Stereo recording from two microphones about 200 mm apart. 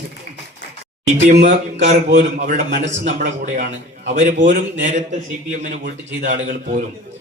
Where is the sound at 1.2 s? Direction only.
35° right (ahead or behind).